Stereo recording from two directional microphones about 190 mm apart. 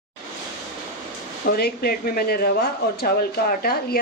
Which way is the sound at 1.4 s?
55° left (ahead or behind).